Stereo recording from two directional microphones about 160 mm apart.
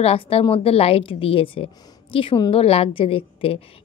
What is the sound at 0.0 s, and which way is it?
A woman's voice, 35° left (ahead or behind).